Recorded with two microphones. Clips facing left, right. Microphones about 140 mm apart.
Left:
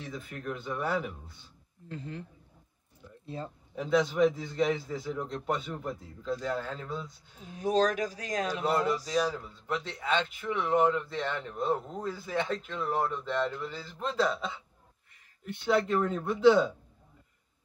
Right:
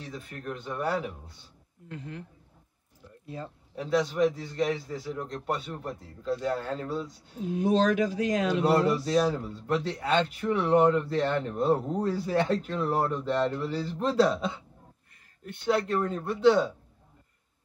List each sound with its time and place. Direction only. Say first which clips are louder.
0.0 s a man's voice: even; centre (ahead or behind)
1.9 s speech: even; 30° left (ahead or behind)
3.4 s a man's voice: even; centre (ahead or behind)
7.7 s speech: right 2 dB; 40° left (ahead or behind)
8.6 s a man's voice: right 4 dB; 5° right (ahead or behind)